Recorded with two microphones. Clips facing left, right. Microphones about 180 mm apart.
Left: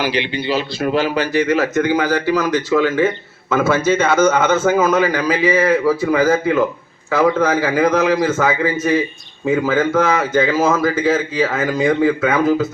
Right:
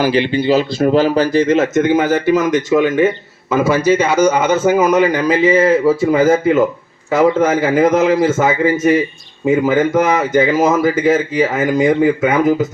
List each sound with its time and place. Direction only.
0.0 s speech: 45° right (ahead or behind); by 12.6 s 15° right (ahead or behind)